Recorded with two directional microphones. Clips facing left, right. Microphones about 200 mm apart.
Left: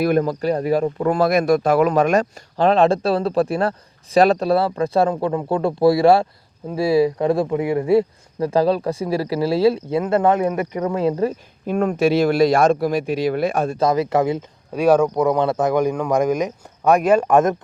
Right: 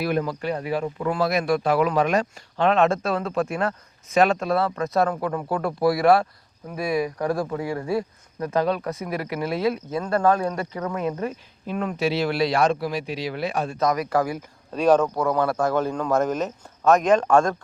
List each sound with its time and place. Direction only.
0.0 s speech: 45° left (ahead or behind)
11.6 s speech: 45° left (ahead or behind)
13.7 s speech: 30° left (ahead or behind)
14.7 s speech: 10° left (ahead or behind)